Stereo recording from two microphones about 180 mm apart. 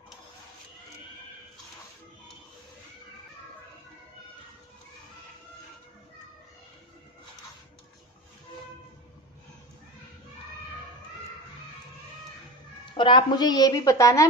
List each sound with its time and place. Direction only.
12.9 s a woman's voice: 25° left (ahead or behind)